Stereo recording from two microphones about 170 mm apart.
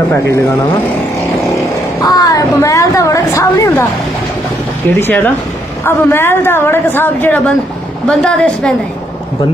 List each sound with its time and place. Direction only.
2.0 s a woman's voice: 20° left (ahead or behind)
4.9 s a woman's voice: 10° left (ahead or behind)